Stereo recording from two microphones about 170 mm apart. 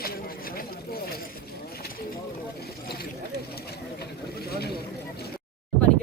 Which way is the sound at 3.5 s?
70° left (ahead or behind).